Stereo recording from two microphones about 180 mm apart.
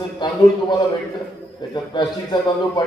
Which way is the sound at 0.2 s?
25° left (ahead or behind).